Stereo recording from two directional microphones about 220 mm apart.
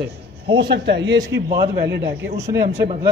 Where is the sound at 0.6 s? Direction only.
50° right (ahead or behind).